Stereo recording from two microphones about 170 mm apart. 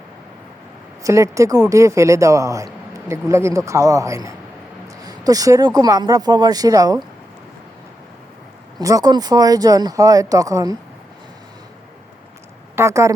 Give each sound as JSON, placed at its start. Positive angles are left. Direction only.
{"t": 1.0, "sound": "speech", "side_deg": -20}
{"t": 8.8, "sound": "speech", "side_deg": -20}
{"t": 12.7, "sound": "a woman's voice", "side_deg": -15}